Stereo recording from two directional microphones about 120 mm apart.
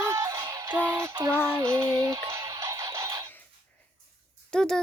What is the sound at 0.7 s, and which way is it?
Synthetic singing, 20° right (ahead or behind).